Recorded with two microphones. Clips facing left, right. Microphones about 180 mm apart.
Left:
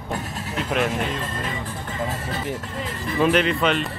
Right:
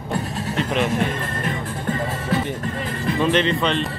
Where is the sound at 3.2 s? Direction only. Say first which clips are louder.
Left 1 dB; 5° left (ahead or behind).